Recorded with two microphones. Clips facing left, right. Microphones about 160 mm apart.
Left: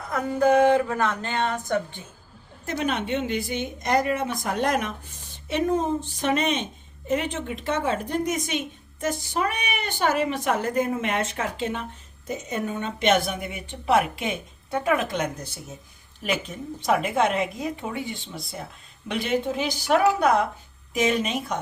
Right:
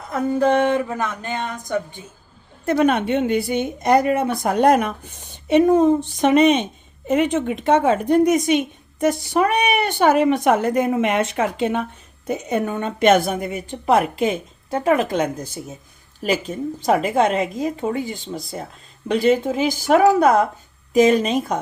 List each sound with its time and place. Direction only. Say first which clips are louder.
0.1 s speech: right 2 dB; 30° right (ahead or behind)
2.6 s a woman's voice: right 9 dB; 60° right (ahead or behind); by 15.0 s 35° right (ahead or behind)
16.2 s a woman's voice: right 7 dB; 40° right (ahead or behind)